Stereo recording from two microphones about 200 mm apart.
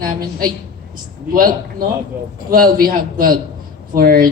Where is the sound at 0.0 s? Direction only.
45° right (ahead or behind).